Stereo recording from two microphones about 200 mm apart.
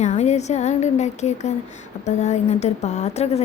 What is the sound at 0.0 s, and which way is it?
A woman's voice, 35° left (ahead or behind).